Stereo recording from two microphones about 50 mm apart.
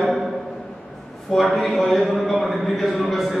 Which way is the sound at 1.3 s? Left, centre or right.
Centre.